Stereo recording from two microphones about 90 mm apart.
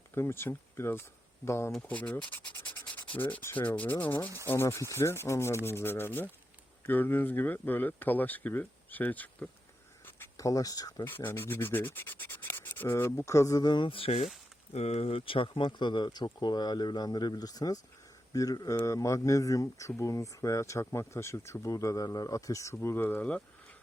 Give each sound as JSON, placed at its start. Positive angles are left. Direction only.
{"t": 0.1, "sound": "rub", "side_deg": 25}
{"t": 1.5, "sound": "speech", "side_deg": 30}
{"t": 1.9, "sound": "rub", "side_deg": 15}
{"t": 3.2, "sound": "sanding", "side_deg": 15}
{"t": 3.4, "sound": "rub", "side_deg": 20}
{"t": 4.4, "sound": "speech", "side_deg": 30}
{"t": 5.6, "sound": "rub", "side_deg": 25}
{"t": 10.3, "sound": "speech", "side_deg": 40}
{"t": 11.0, "sound": "rub", "side_deg": 25}
{"t": 15.0, "sound": "speech", "side_deg": 85}